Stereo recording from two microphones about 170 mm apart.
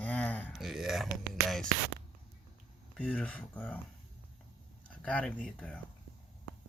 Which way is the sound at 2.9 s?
10° left (ahead or behind).